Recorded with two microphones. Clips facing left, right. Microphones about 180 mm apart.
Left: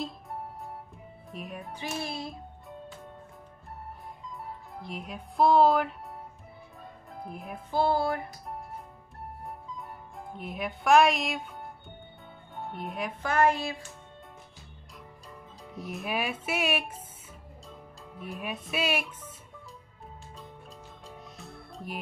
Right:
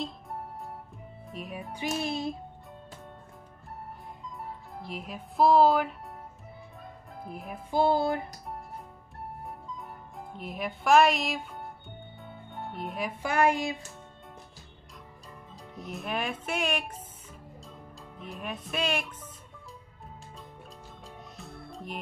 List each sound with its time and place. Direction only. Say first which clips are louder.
1.3 s speech: right 1 dB; centre (ahead or behind)
1.7 s speech: right 5 dB; 15° right (ahead or behind)
4.8 s speech: even; centre (ahead or behind)
7.2 s speech: even; centre (ahead or behind)
7.7 s music: right 2 dB; 15° right (ahead or behind)
9.8 s speech: even; centre (ahead or behind)
15.7 s speech: left 1 dB; centre (ahead or behind)
18.1 s speech: left 2 dB; 5° left (ahead or behind)
21.4 s music: right 4 dB; centre (ahead or behind)